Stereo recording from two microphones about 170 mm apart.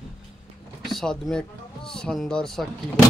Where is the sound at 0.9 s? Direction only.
Centre (ahead or behind).